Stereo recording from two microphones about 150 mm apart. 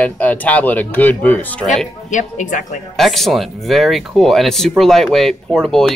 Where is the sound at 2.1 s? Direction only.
55° left (ahead or behind).